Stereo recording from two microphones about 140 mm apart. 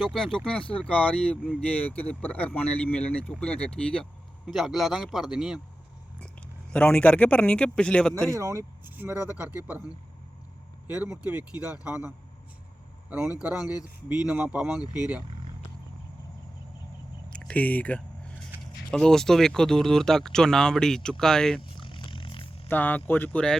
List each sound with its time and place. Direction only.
0.0 s speech: centre (ahead or behind)
6.7 s speech: 5° left (ahead or behind)
8.3 s speech: 20° right (ahead or behind)
11.0 s speech: 10° right (ahead or behind)
17.3 s a sound: 10° left (ahead or behind)
18.9 s speech: 5° left (ahead or behind)
21.6 s roar: 35° left (ahead or behind)
22.7 s speech: 10° left (ahead or behind)